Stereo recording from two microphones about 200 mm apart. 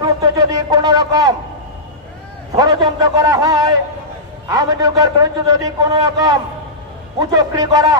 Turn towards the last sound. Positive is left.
turn(degrees=-20)  # may be behind; listen again after turning